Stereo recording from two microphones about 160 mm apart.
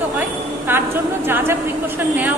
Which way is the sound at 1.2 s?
15° right (ahead or behind).